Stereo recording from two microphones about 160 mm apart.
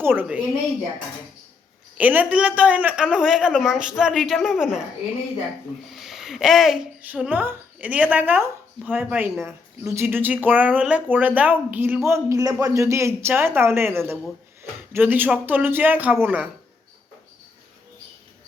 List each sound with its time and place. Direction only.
0.0 s a woman's voice: 10° right (ahead or behind)
2.0 s speech: 10° right (ahead or behind)
5.9 s a woman's voice: centre (ahead or behind)